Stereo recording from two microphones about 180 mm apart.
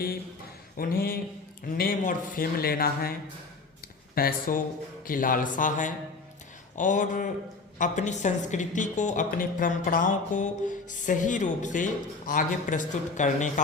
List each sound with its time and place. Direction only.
0.8 s a woman's voice: 55° left (ahead or behind)